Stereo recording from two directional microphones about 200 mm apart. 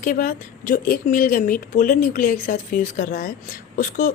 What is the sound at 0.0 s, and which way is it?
Speech, 45° left (ahead or behind).